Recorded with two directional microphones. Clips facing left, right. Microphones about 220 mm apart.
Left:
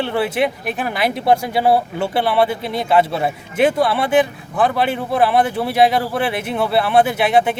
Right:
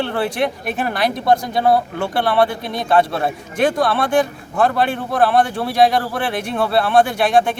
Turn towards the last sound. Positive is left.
turn(degrees=5)  # may be behind; listen again after turning